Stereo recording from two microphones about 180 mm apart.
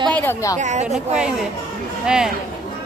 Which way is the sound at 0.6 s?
40° right (ahead or behind).